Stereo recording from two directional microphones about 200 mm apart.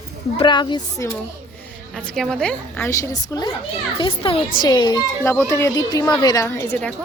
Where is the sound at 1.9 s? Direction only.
5° left (ahead or behind).